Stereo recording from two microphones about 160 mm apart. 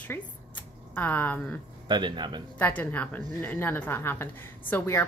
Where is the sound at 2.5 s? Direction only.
10° left (ahead or behind).